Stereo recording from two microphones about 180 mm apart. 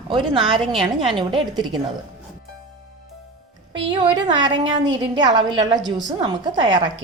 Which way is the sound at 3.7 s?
25° right (ahead or behind).